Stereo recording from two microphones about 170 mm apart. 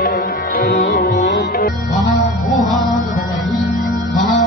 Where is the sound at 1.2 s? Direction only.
60° left (ahead or behind).